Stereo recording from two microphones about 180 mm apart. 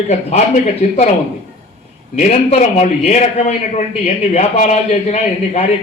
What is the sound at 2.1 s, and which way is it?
A man's voice, 40° left (ahead or behind).